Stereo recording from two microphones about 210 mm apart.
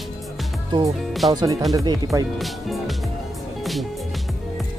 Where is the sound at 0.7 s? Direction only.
20° right (ahead or behind).